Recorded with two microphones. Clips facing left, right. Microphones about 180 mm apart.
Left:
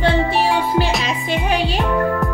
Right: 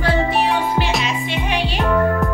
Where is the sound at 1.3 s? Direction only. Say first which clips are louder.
Left 3 dB; 40° left (ahead or behind).